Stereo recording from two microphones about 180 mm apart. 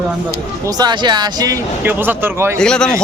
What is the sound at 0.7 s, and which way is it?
Speech, 25° right (ahead or behind).